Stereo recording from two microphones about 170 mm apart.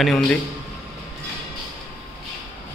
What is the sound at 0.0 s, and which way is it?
Speech, centre (ahead or behind).